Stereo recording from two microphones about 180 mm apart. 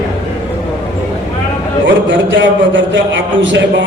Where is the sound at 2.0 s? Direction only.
90° right.